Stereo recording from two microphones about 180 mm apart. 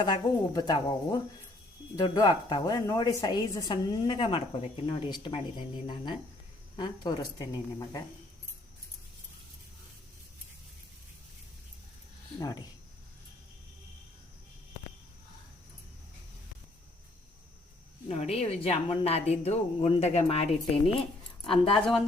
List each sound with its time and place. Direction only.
0.0 s a woman's voice: 25° left (ahead or behind)
12.4 s a woman's voice: 20° left (ahead or behind)
18.1 s a woman's voice: 35° left (ahead or behind)
21.8 s speech: centre (ahead or behind)